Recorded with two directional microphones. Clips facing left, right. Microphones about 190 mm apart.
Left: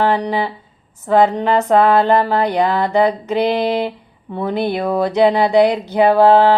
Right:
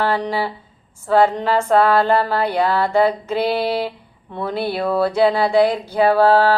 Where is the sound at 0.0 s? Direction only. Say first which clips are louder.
Left 3 dB; 15° left (ahead or behind).